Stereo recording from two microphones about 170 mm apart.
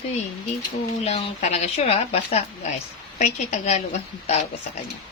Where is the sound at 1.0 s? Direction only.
40° left (ahead or behind).